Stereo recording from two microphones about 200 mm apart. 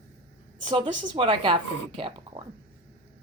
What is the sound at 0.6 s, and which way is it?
A woman's voice, 25° right (ahead or behind).